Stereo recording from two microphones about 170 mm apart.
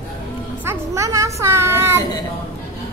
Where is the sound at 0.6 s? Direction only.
15° right (ahead or behind).